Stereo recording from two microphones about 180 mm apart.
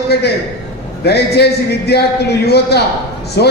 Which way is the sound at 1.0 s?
65° left (ahead or behind).